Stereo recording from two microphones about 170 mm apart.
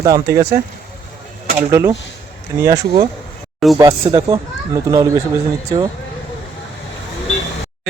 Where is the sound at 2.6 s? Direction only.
20° right (ahead or behind).